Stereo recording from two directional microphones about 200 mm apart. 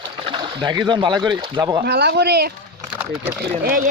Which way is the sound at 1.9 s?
55° right (ahead or behind).